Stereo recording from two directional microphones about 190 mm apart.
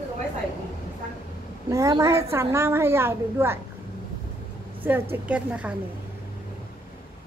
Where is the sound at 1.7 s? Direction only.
15° right (ahead or behind).